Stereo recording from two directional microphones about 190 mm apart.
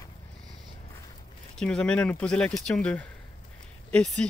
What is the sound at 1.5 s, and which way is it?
Speech, 5° left (ahead or behind).